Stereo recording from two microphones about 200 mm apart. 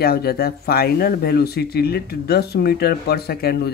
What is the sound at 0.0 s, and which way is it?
Speech, 50° left (ahead or behind).